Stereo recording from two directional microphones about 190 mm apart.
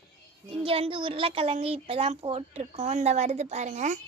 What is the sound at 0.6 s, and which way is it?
A woman's voice, 30° right (ahead or behind).